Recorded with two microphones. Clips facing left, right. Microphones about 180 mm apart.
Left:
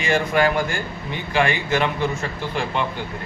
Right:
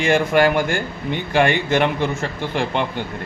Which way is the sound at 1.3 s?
60° right (ahead or behind).